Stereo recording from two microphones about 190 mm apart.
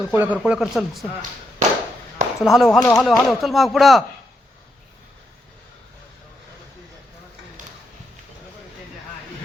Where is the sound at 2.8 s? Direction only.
15° left (ahead or behind).